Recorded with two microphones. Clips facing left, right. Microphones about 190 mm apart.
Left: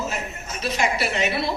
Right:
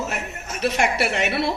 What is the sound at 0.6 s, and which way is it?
Speech, 65° right (ahead or behind).